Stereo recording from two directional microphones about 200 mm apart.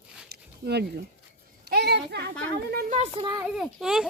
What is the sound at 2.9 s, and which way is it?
Speech, 30° right (ahead or behind).